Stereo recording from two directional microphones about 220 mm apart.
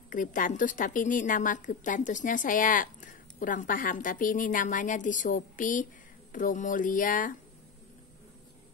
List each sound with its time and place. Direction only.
0.1 s a woman's voice: 35° left (ahead or behind)